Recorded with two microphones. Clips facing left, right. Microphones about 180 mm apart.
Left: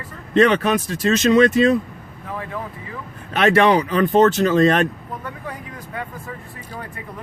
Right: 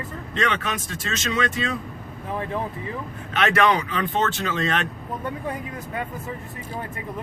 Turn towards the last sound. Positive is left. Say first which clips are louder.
# right 1 dB
turn(degrees=-25)  # may be behind; listen again after turning